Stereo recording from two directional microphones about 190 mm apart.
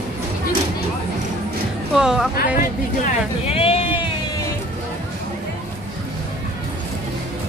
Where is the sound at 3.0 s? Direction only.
30° left (ahead or behind).